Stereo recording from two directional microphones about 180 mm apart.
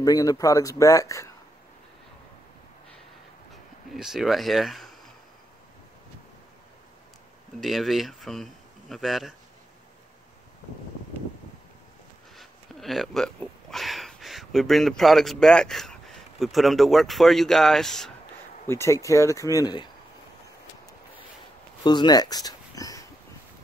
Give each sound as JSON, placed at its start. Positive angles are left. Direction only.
{"t": 0.0, "sound": "speech", "side_deg": 20}
{"t": 3.9, "sound": "speech", "side_deg": 0}
{"t": 7.6, "sound": "speech", "side_deg": 0}
{"t": 12.4, "sound": "speech", "side_deg": 0}
{"t": 18.7, "sound": "speech", "side_deg": 15}
{"t": 21.8, "sound": "speech", "side_deg": 25}